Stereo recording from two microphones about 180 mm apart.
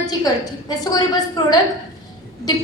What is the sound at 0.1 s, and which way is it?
A woman's voice, 20° left (ahead or behind).